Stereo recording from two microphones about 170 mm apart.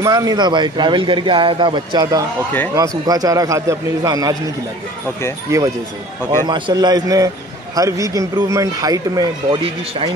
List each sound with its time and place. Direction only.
0.0 s speech: 20° right (ahead or behind)
6.4 s speech: 25° right (ahead or behind)